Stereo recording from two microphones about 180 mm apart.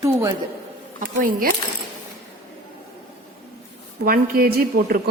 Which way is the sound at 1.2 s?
55° right (ahead or behind).